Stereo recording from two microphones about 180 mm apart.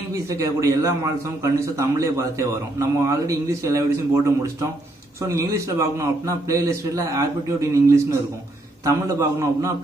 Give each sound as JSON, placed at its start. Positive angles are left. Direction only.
{"t": 0.1, "sound": "a man's voice", "side_deg": -15}